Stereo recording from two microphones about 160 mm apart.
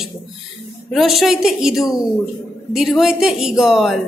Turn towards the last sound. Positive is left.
turn(degrees=0)  # may be behind; listen again after turning